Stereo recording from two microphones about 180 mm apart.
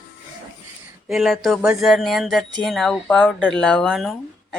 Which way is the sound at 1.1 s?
Centre (ahead or behind).